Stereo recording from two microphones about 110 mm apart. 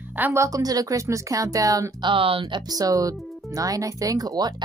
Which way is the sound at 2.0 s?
55° right (ahead or behind).